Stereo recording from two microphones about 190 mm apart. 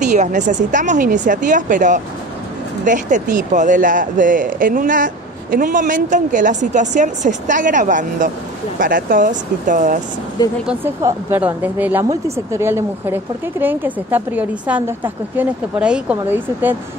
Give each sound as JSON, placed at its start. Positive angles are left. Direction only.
{"t": 0.0, "sound": "a woman's voice", "side_deg": -40}
{"t": 10.7, "sound": "a woman's voice", "side_deg": -15}